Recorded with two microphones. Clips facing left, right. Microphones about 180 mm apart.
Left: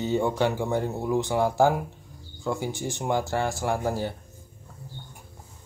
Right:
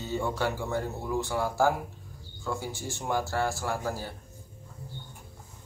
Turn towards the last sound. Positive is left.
turn(degrees=20)  # may be behind; listen again after turning